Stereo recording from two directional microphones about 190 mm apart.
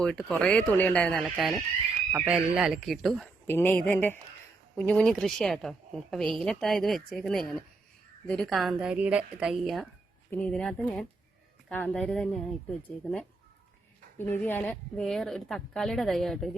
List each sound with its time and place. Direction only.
0.0 s a woman's voice: 5° left (ahead or behind)
3.4 s a woman's voice: 10° left (ahead or behind)
14.2 s a woman's voice: 10° left (ahead or behind)